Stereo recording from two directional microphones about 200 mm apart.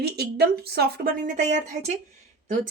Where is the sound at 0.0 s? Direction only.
50° right (ahead or behind).